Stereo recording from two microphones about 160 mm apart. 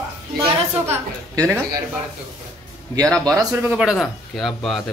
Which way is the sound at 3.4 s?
15° right (ahead or behind).